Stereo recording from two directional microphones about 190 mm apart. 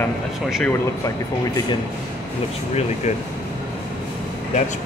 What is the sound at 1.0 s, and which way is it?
Speech, 20° left (ahead or behind).